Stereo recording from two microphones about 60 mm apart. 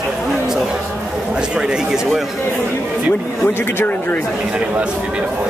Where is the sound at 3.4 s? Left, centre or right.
Left.